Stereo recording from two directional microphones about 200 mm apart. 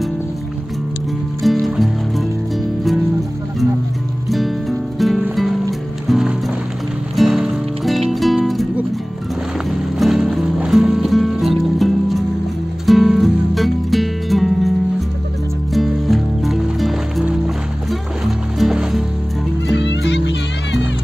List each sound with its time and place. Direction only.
1.4 s music: centre (ahead or behind)
4.3 s music: centre (ahead or behind)
15.7 s music: centre (ahead or behind)
19.7 s music: 65° left (ahead or behind)